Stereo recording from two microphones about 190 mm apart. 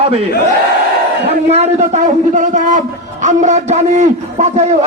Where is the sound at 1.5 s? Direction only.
35° right (ahead or behind).